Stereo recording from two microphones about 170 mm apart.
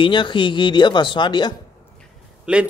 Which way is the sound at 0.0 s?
30° left (ahead or behind).